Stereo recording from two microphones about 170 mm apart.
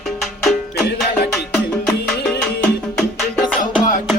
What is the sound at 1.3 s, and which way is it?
Music, 5° left (ahead or behind).